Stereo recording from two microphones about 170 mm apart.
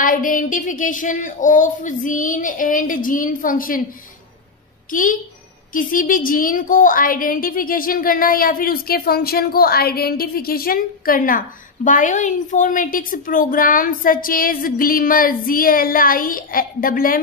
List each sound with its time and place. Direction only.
0.0 s female singing: 55° left (ahead or behind)
5.7 s a woman's voice: 55° left (ahead or behind)